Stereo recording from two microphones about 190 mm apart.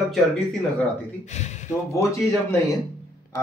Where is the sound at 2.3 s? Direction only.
15° left (ahead or behind).